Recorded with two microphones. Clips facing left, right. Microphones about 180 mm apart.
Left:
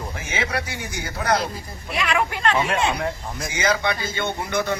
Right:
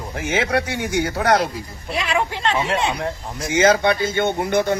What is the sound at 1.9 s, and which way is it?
Speech, 30° right (ahead or behind).